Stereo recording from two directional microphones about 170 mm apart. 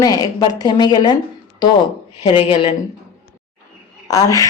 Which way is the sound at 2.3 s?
30° left (ahead or behind).